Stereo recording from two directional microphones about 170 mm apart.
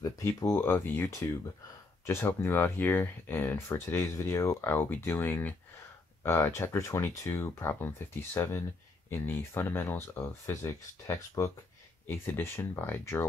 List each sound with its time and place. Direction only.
0.0 s speech: 20° left (ahead or behind)